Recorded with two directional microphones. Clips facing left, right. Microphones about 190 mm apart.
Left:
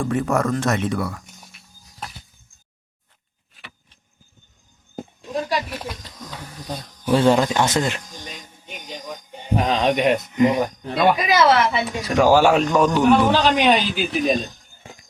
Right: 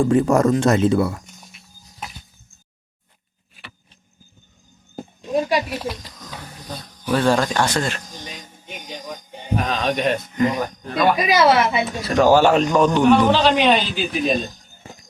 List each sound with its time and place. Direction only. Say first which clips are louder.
0.0 s speech: right 5 dB; 30° right (ahead or behind)
5.3 s speech: right 4 dB; 10° right (ahead or behind)
7.0 s speech: left 2 dB; 25° left (ahead or behind)
8.3 s music: right 1 dB; centre (ahead or behind)
9.6 s speech: left 3 dB; 25° left (ahead or behind)
11.2 s a woman's voice: right 1 dB; 15° right (ahead or behind)
11.9 s a man's voice: right 1 dB; 15° left (ahead or behind)